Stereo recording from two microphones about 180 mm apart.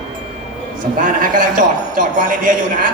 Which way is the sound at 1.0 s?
45° right (ahead or behind).